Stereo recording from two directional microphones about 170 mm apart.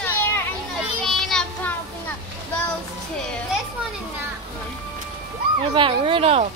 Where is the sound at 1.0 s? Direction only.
5° left (ahead or behind).